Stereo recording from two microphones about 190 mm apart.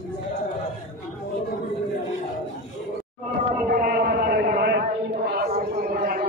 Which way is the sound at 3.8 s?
55° right (ahead or behind).